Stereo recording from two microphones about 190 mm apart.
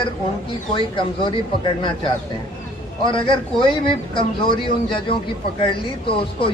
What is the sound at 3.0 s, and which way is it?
Speech, 25° left (ahead or behind).